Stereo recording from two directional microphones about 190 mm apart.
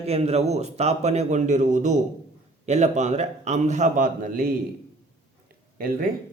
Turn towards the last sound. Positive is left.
turn(degrees=-50)  # may be behind; listen again after turning